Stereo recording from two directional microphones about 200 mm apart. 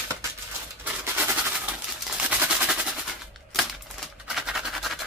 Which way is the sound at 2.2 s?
5° right (ahead or behind).